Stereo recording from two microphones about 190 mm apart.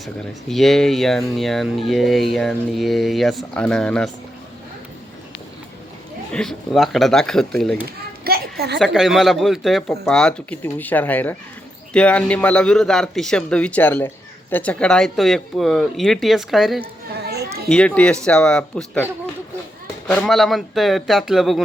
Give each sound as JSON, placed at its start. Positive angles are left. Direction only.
{"t": 0.0, "sound": "speech", "side_deg": 0}
{"t": 6.3, "sound": "speech", "side_deg": 5}
{"t": 8.2, "sound": "children playing", "side_deg": -55}
{"t": 8.8, "sound": "speech", "side_deg": 0}
{"t": 17.2, "sound": "children playing", "side_deg": -55}
{"t": 17.7, "sound": "speech", "side_deg": 5}
{"t": 20.1, "sound": "speech", "side_deg": 5}